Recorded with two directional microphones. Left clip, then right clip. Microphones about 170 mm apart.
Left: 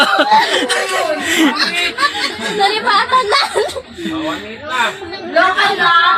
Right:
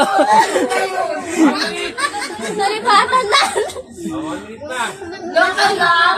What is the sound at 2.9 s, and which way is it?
Speech, 30° left (ahead or behind).